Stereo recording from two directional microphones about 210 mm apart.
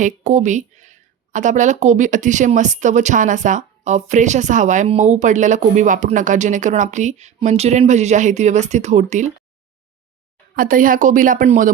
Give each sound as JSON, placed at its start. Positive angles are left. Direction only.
{"t": 0.0, "sound": "speech", "side_deg": -35}
{"t": 10.5, "sound": "speech", "side_deg": -40}